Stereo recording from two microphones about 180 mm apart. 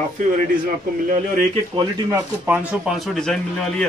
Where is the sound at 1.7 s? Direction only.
15° right (ahead or behind).